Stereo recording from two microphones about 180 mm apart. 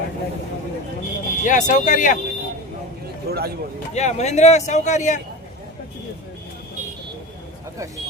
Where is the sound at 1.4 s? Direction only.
45° left (ahead or behind).